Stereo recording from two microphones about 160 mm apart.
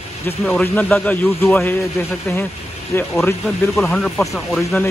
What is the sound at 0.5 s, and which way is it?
A man's voice, 10° left (ahead or behind).